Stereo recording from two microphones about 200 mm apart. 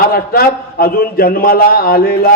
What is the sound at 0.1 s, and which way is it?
A man's voice, 50° left (ahead or behind).